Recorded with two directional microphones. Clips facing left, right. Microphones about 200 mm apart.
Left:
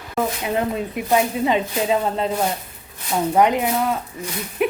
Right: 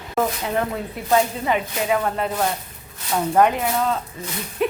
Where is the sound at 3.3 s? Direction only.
15° left (ahead or behind).